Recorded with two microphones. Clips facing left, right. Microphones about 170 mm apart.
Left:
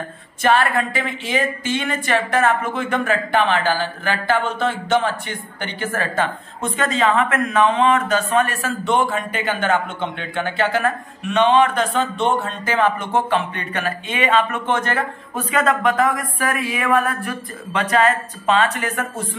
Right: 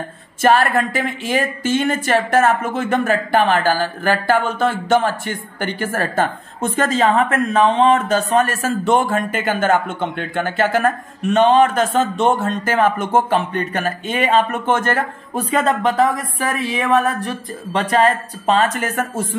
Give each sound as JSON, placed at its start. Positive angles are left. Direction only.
{"t": 0.4, "sound": "speech", "side_deg": -45}
{"t": 15.5, "sound": "speech", "side_deg": -30}
{"t": 17.7, "sound": "a woman's voice", "side_deg": -35}